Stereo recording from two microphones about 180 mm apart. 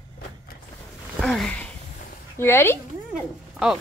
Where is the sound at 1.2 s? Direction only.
5° left (ahead or behind).